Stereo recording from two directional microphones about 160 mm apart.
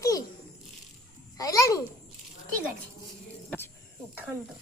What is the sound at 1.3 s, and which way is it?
Speech, 20° left (ahead or behind).